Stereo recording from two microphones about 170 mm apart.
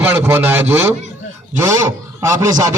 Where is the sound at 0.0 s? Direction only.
10° right (ahead or behind).